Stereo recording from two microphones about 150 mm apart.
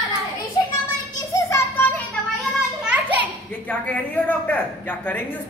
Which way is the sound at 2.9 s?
10° right (ahead or behind).